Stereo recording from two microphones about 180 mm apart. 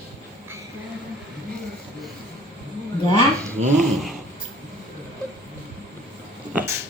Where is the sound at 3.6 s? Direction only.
35° right (ahead or behind).